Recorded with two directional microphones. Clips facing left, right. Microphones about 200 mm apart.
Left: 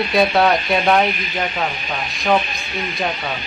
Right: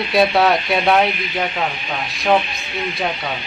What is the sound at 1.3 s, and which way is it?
Speech, centre (ahead or behind).